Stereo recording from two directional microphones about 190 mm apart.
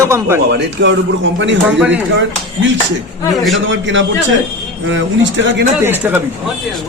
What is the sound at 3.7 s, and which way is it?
Speech, 75° right (ahead or behind).